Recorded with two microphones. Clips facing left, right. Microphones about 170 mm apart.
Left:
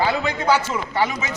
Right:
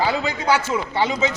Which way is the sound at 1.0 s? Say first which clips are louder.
Right 3 dB; 25° right (ahead or behind).